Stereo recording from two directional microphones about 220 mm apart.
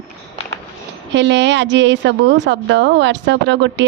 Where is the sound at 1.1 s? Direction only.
50° right (ahead or behind).